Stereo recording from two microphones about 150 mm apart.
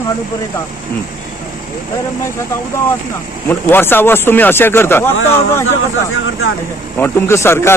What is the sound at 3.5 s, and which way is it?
A man's voice, 15° left (ahead or behind).